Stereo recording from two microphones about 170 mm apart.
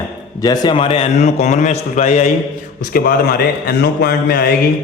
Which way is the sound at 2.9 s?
60° left (ahead or behind).